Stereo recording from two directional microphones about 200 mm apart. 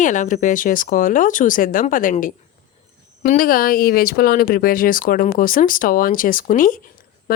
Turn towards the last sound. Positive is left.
turn(degrees=45)  # may be behind; listen again after turning